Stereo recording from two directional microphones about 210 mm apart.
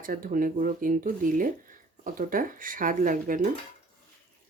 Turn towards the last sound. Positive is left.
turn(degrees=-40)  # may be behind; listen again after turning